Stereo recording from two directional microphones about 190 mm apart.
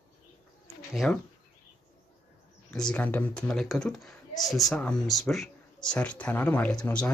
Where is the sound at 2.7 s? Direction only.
5° left (ahead or behind).